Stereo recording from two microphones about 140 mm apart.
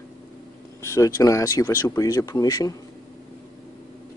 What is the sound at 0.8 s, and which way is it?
Speech, 20° left (ahead or behind).